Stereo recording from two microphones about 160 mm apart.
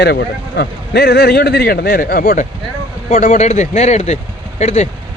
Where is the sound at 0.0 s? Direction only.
90° left; by 2.3 s 75° left (ahead or behind).